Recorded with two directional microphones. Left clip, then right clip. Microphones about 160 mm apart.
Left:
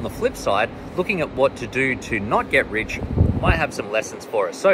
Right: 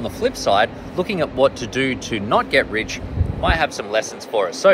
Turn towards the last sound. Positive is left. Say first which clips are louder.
# right 3 dB
turn(degrees=15)  # may be behind; listen again after turning